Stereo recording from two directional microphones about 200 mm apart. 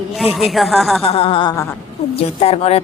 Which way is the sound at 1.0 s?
30° left (ahead or behind).